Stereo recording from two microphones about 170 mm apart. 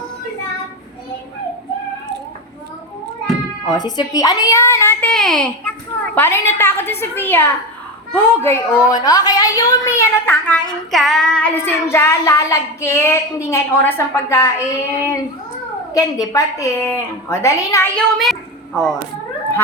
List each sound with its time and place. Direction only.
3.7 s a woman's voice: 25° left (ahead or behind); by 5.5 s centre (ahead or behind)
6.1 s a woman's voice: 15° left (ahead or behind)
17.9 s a woman's voice: centre (ahead or behind)